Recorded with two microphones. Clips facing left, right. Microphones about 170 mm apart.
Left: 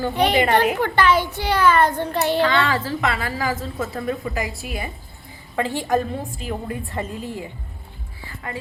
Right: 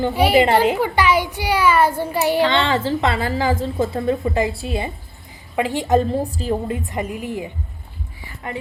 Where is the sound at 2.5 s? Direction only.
25° right (ahead or behind).